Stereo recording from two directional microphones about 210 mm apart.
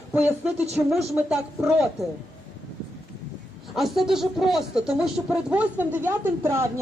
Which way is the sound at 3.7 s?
Centre (ahead or behind).